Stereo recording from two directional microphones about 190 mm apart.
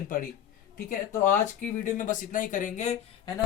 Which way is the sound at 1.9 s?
45° left (ahead or behind).